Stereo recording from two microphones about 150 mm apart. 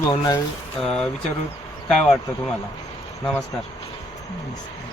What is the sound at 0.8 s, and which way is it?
Speech, 5° left (ahead or behind).